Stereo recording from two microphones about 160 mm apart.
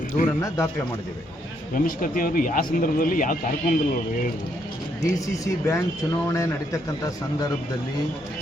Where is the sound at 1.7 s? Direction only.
60° left (ahead or behind).